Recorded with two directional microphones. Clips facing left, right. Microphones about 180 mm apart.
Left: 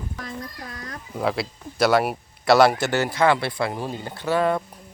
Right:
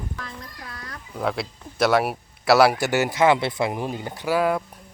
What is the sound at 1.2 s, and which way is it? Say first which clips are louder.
Speech: left 1 dB; 5° left (ahead or behind).